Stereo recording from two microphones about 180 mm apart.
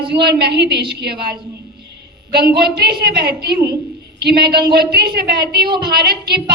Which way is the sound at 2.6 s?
60° right (ahead or behind).